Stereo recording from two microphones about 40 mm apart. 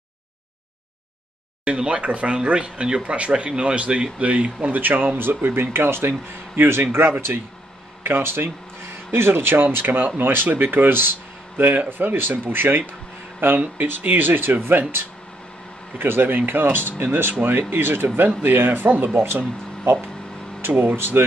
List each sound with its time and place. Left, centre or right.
1.6 s speech: right
9.9 s speech: right
11.8 s speech: right
12.2 s speech: right
13.4 s speech: right
13.8 s speech: right
16.0 s speech: right
17.3 s speech: right
19.2 s speech: right
20.8 s speech: right